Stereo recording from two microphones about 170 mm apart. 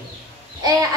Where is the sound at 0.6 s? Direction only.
20° right (ahead or behind).